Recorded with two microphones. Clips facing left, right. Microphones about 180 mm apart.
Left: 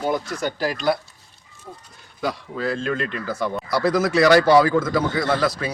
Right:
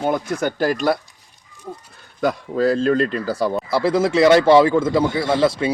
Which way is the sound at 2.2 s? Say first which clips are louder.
Right 7 dB; 45° right (ahead or behind).